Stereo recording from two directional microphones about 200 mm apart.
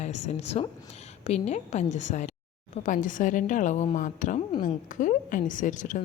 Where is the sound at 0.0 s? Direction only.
35° left (ahead or behind).